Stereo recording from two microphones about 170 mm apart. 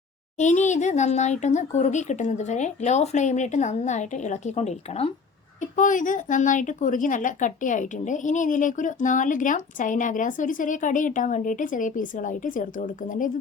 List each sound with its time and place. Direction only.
0.3 s a woman's voice: 45° left (ahead or behind)
5.7 s a woman's voice: 50° left (ahead or behind)